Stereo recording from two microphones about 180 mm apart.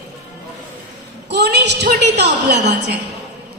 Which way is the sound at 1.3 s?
70° right (ahead or behind).